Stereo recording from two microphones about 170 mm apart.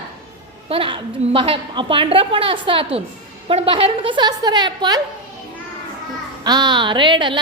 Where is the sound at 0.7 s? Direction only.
30° right (ahead or behind).